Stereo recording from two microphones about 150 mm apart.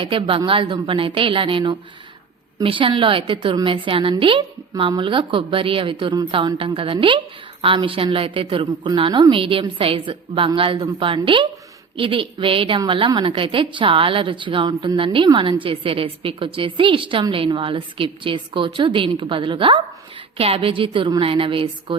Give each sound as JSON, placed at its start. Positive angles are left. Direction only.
{"t": 0.0, "sound": "a woman's voice", "side_deg": -35}